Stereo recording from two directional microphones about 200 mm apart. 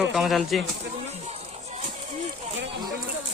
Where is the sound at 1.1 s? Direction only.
35° right (ahead or behind).